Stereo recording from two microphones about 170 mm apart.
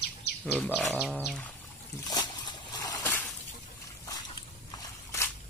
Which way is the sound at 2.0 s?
25° left (ahead or behind).